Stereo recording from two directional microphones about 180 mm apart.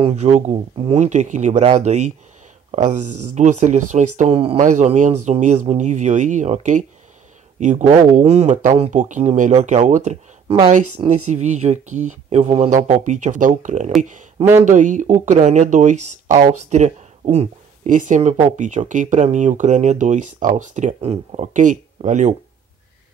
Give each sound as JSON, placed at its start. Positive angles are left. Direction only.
{"t": 0.0, "sound": "speech", "side_deg": -40}
{"t": 11.2, "sound": "speech", "side_deg": -40}